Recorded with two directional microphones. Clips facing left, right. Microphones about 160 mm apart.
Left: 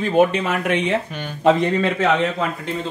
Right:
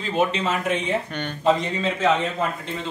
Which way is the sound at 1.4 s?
65° left (ahead or behind).